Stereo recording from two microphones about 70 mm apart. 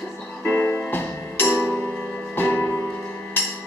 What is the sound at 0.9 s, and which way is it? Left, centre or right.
Music, left.